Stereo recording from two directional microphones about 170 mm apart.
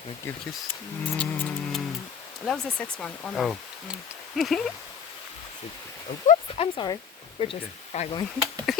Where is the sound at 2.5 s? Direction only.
5° left (ahead or behind).